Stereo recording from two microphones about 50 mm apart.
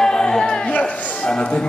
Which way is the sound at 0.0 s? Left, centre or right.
Centre.